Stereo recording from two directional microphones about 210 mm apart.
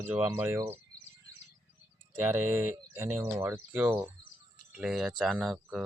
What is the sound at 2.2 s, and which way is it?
Speech, 10° right (ahead or behind).